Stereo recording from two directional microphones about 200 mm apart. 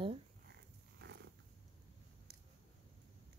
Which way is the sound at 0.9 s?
55° right (ahead or behind).